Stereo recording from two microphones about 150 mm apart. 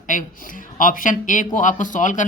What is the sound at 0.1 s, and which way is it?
Speech, 60° left (ahead or behind).